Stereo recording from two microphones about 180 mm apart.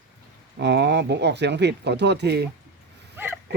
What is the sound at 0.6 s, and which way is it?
Speech, 70° right (ahead or behind).